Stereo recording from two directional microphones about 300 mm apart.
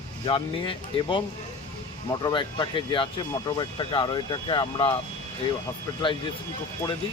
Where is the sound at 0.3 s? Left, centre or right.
Centre.